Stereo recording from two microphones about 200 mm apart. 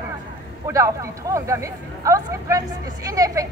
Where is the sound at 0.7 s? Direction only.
15° right (ahead or behind).